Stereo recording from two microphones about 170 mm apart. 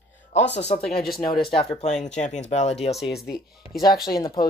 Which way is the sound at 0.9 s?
65° left (ahead or behind).